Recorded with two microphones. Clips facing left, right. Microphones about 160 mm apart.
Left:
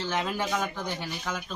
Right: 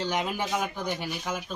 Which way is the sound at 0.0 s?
15° right (ahead or behind).